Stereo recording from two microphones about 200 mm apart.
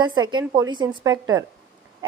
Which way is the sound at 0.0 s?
20° right (ahead or behind).